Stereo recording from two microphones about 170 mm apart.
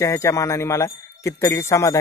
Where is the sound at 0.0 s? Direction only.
15° left (ahead or behind).